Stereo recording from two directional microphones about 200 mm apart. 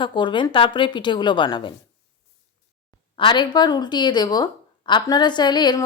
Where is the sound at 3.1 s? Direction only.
25° left (ahead or behind).